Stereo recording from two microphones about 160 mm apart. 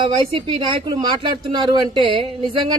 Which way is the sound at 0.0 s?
35° right (ahead or behind).